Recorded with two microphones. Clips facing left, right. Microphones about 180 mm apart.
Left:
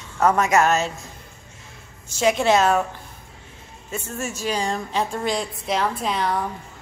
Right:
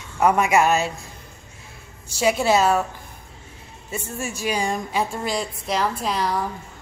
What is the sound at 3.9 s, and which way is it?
A woman's voice, 10° right (ahead or behind).